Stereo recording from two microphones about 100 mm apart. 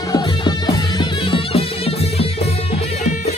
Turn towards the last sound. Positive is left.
turn(degrees=90)